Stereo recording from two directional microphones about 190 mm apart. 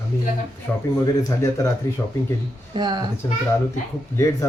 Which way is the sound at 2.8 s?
20° right (ahead or behind).